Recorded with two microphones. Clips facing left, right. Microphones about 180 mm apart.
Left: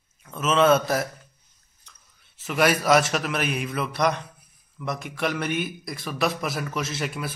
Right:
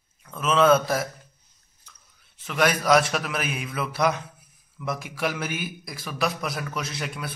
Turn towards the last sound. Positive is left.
turn(degrees=0)  # may be behind; listen again after turning